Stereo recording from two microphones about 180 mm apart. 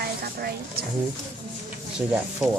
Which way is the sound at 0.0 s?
60° right (ahead or behind).